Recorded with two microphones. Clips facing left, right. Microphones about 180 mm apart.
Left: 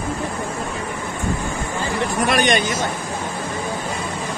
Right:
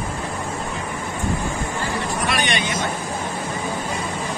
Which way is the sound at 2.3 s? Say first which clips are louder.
Left 7 dB; 45° left (ahead or behind).